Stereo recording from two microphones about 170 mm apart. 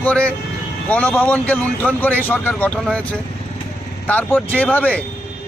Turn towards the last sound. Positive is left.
turn(degrees=10)  # may be behind; listen again after turning